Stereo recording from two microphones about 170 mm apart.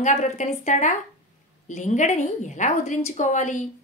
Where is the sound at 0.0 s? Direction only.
45° left (ahead or behind).